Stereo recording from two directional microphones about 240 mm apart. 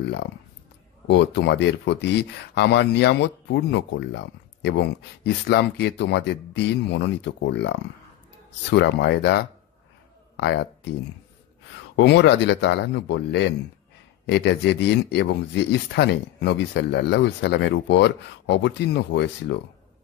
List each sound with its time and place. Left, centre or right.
0.0 s speech: left
11.9 s speech: left